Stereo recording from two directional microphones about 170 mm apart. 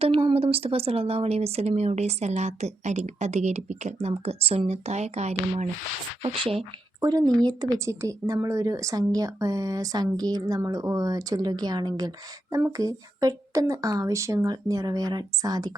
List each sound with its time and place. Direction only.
0.0 s speech: 30° right (ahead or behind)
7.0 s speech: 20° right (ahead or behind)